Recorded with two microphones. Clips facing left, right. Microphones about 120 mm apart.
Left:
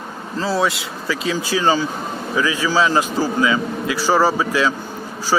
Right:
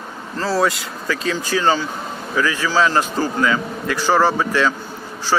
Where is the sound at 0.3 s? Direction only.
Centre (ahead or behind).